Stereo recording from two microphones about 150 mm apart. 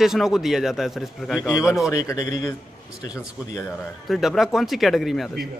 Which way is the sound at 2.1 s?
25° left (ahead or behind).